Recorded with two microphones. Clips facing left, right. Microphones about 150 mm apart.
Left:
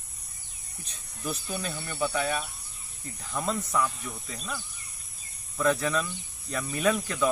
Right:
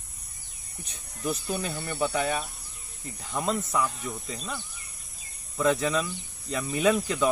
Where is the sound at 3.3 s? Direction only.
10° right (ahead or behind).